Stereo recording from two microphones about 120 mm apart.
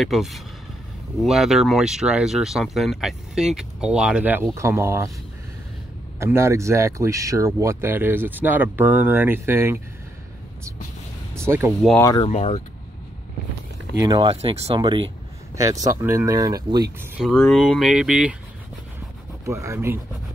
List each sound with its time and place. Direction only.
0.0 s speech: centre (ahead or behind); by 5.1 s 25° right (ahead or behind)
6.1 s speech: 25° right (ahead or behind)
11.3 s speech: 20° right (ahead or behind)
12.2 s speech: 60° left (ahead or behind)
13.9 s speech: 35° right (ahead or behind)
14.2 s speech: 55° right (ahead or behind)
14.8 s speech: 40° right (ahead or behind)
15.5 s speech: 25° right (ahead or behind)
17.2 s speech: 5° left (ahead or behind)
19.4 s speech: 25° right (ahead or behind)